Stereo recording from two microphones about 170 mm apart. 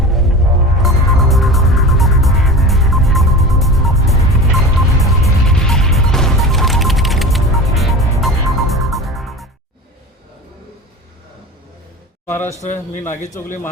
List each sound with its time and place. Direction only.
0.0 s music: centre (ahead or behind)
12.2 s a sound: 15° left (ahead or behind)
12.6 s a man's voice: 45° left (ahead or behind)